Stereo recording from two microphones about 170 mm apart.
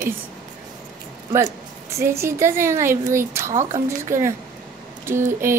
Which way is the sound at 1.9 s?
15° right (ahead or behind).